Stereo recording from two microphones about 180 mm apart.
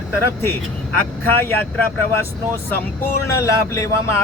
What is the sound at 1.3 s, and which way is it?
Speech, 10° left (ahead or behind).